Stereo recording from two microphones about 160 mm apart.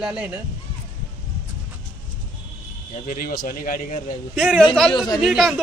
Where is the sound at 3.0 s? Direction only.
65° left (ahead or behind).